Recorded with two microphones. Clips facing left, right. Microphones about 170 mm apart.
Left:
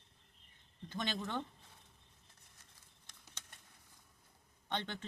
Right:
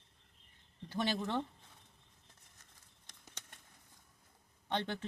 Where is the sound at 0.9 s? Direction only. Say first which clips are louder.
Right 5 dB; 35° right (ahead or behind).